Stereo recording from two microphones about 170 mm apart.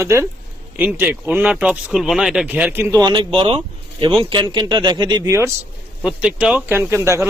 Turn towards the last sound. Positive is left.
turn(degrees=-15)  # may be behind; listen again after turning